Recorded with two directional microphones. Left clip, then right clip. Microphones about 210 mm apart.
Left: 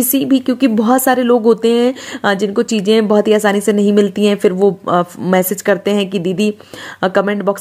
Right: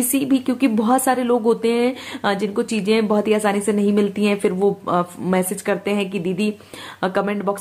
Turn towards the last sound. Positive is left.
turn(degrees=25)  # may be behind; listen again after turning